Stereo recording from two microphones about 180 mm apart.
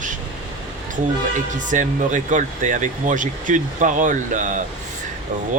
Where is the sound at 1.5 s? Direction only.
45° right (ahead or behind).